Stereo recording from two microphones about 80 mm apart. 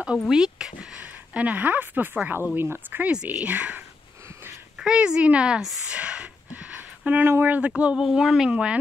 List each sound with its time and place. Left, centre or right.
0.3 s speech: centre